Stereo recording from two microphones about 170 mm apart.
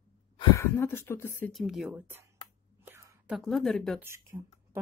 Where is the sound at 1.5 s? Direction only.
Centre (ahead or behind).